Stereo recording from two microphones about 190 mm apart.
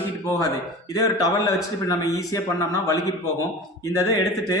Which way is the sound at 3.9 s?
15° left (ahead or behind).